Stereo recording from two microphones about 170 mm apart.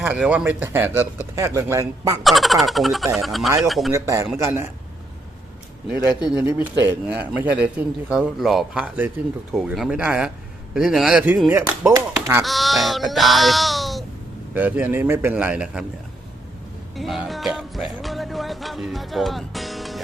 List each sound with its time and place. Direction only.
0.0 s a man's voice: 10° right (ahead or behind)
2.2 s speech: centre (ahead or behind)
3.9 s a man's voice: 20° right (ahead or behind)
6.2 s a man's voice: 10° right (ahead or behind)
12.4 s a man's voice: centre (ahead or behind)
16.9 s music: centre (ahead or behind)